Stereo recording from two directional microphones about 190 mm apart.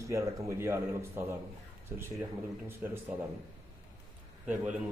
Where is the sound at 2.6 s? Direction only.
10° right (ahead or behind).